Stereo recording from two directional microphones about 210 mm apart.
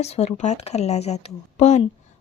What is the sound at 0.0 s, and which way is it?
Speech, 30° left (ahead or behind).